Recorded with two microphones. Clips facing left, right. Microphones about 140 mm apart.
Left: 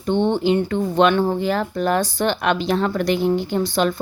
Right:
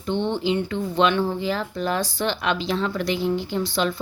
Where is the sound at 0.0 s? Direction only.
55° left (ahead or behind).